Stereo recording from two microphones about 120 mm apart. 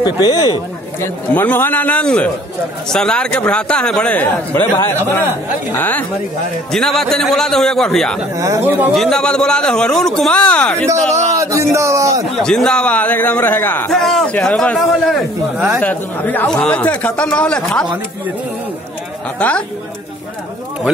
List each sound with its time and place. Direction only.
0.0 s speech: 35° left (ahead or behind)
1.0 s a man's voice: 15° left (ahead or behind)
6.7 s a man's voice: 5° left (ahead or behind)
8.4 s a man's voice: 25° right (ahead or behind)
8.9 s a man's voice: 5° left (ahead or behind)
10.9 s a man's voice: 25° right (ahead or behind)
12.4 s a man's voice: 5° left (ahead or behind)
13.8 s a man's voice: 5° left (ahead or behind)
15.8 s a man's voice: 15° left (ahead or behind)
19.4 s a man's voice: 10° left (ahead or behind)